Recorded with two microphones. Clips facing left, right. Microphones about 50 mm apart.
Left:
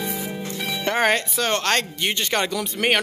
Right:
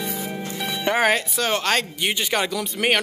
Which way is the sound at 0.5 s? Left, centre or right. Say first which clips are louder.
Left 1 dB; right.